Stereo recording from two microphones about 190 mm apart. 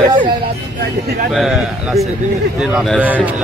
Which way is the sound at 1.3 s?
Centre (ahead or behind).